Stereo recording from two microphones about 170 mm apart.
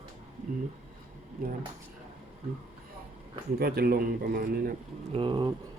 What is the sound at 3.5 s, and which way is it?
Speech, 65° right (ahead or behind).